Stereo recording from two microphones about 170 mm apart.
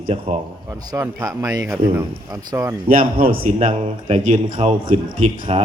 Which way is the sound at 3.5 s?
40° right (ahead or behind).